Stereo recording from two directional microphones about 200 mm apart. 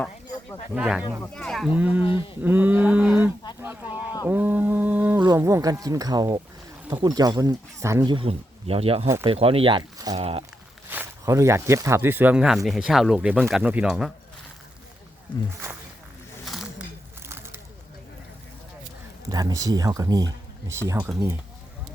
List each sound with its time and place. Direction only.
0.7 s speech: 5° right (ahead or behind)
2.0 s a sound: 25° left (ahead or behind)
2.4 s speech: 10° right (ahead or behind)
4.3 s mantra: 10° right (ahead or behind)
5.2 s speech: 20° right (ahead or behind)
8.1 s speech: 30° right (ahead or behind)
10.8 s speech: 10° right (ahead or behind)
16.5 s a sound: centre (ahead or behind)
17.2 s a sound: 10° right (ahead or behind)
19.3 s speech: 20° right (ahead or behind)